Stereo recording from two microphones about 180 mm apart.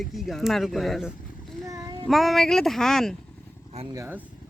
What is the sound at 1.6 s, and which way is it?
Child singing, 20° right (ahead or behind).